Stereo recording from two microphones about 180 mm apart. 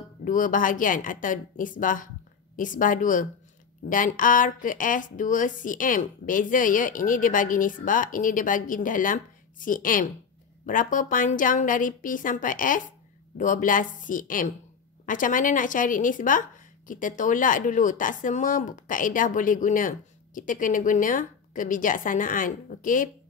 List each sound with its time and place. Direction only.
0.2 s speech: 45° left (ahead or behind)